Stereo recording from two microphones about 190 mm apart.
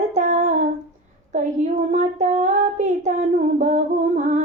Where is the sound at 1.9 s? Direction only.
40° right (ahead or behind).